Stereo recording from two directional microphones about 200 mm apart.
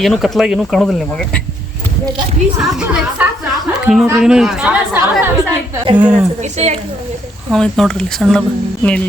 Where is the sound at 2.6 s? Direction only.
5° right (ahead or behind).